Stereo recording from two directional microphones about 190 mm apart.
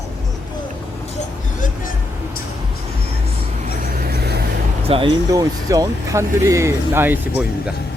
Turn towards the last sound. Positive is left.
turn(degrees=-10)  # may be behind; listen again after turning